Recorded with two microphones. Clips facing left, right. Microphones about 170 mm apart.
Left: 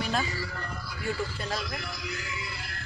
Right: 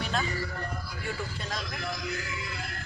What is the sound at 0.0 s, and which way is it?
Music, 5° left (ahead or behind).